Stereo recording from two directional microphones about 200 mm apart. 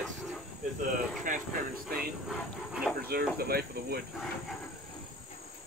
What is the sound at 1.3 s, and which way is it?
Speech, 40° right (ahead or behind).